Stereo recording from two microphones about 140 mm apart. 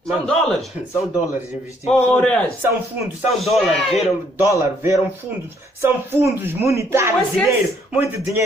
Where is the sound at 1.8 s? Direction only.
5° left (ahead or behind).